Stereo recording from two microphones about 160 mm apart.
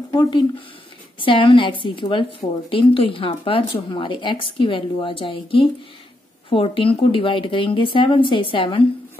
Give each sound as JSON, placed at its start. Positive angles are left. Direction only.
{"t": 0.1, "sound": "speech", "side_deg": 30}